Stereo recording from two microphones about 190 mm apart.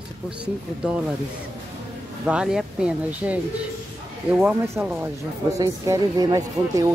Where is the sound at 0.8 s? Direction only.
5° right (ahead or behind).